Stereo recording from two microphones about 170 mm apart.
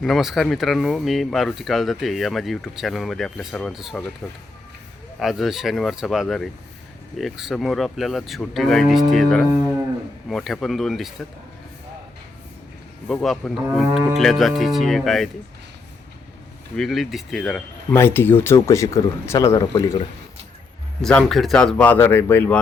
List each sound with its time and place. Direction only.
0.0 s speech: centre (ahead or behind)
13.1 s speech: 5° left (ahead or behind)
16.7 s speech: centre (ahead or behind)
17.9 s speech: 15° left (ahead or behind)
21.0 s speech: 5° left (ahead or behind)